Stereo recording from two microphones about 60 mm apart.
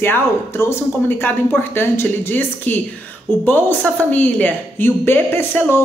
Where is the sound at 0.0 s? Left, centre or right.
Left.